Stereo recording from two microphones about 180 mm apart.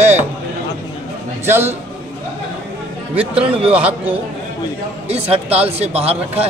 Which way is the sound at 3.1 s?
30° right (ahead or behind).